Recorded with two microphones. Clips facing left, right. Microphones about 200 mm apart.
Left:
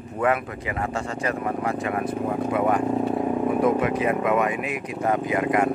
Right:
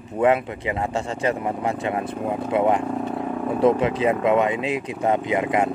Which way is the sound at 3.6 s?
25° right (ahead or behind).